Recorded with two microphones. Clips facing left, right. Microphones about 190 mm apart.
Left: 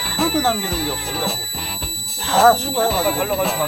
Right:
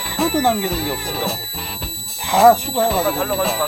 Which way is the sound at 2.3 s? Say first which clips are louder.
Right 2 dB; 15° right (ahead or behind).